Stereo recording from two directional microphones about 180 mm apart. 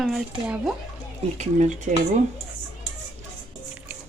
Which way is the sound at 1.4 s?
40° right (ahead or behind).